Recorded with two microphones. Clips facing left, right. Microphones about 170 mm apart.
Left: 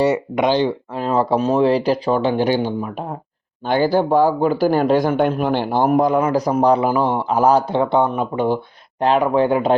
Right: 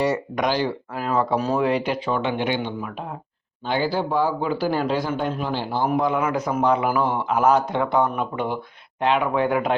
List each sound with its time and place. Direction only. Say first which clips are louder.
0.0 s speech: left 5 dB; 25° left (ahead or behind)
3.7 s speech: left 7 dB; 50° left (ahead or behind); by 9.7 s 30° left (ahead or behind)